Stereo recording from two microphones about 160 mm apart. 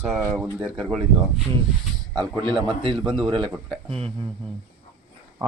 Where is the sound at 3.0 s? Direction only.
Centre (ahead or behind).